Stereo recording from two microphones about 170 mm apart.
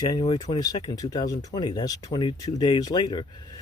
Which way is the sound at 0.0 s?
25° left (ahead or behind).